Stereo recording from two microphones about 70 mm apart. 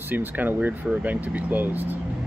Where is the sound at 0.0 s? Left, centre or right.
Right.